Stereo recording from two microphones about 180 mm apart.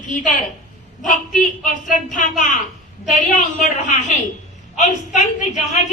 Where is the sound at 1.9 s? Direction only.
45° left (ahead or behind).